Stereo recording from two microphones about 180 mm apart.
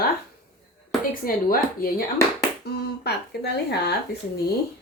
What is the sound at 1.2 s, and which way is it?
Speech, 55° left (ahead or behind).